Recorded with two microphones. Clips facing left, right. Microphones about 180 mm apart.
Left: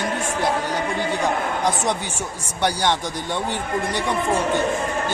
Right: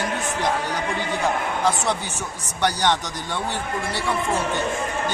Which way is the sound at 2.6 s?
10° left (ahead or behind).